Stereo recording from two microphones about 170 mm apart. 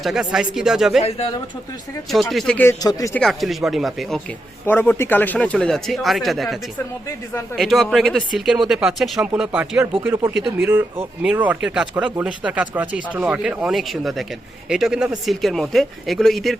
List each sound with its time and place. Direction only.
0.0 s speech: 5° right (ahead or behind)
2.3 s speech: 5° left (ahead or behind)
2.8 s speech: 20° left (ahead or behind)
3.2 s speech: centre (ahead or behind)
4.6 s speech: 10° left (ahead or behind)